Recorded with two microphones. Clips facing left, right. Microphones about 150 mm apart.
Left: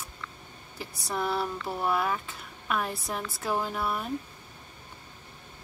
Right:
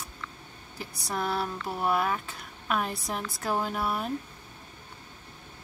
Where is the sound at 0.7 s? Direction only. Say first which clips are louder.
Even; centre (ahead or behind).